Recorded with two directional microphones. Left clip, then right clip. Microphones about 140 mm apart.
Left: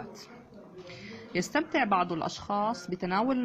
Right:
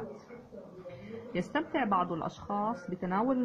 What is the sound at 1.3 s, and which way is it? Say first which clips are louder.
A woman's voice: left 4 dB; 20° left (ahead or behind).